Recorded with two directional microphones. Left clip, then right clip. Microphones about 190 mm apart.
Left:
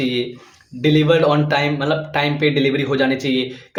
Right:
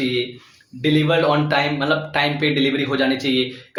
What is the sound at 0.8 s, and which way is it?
Speech, 30° left (ahead or behind).